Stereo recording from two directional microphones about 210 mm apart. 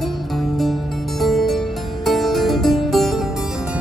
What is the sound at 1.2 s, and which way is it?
Harpsichord, centre (ahead or behind).